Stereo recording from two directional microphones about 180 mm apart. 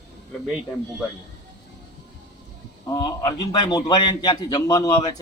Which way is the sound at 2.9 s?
20° left (ahead or behind).